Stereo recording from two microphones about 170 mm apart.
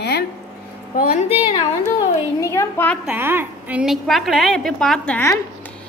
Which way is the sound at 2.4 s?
15° left (ahead or behind).